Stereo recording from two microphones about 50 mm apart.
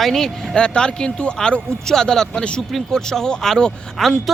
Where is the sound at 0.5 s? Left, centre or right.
Centre.